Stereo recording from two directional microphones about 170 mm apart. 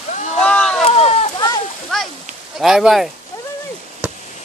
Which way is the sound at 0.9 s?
35° left (ahead or behind).